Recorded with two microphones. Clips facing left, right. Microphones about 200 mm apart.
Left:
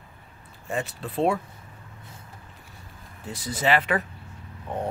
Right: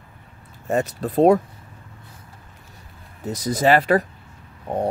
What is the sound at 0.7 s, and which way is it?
Speech, 40° right (ahead or behind).